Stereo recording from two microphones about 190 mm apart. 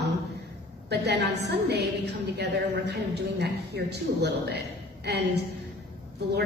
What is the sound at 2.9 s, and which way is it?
A woman's voice, 60° right (ahead or behind).